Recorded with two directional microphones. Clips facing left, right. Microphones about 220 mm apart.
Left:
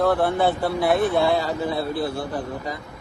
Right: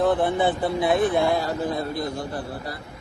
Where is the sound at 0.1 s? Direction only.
20° right (ahead or behind).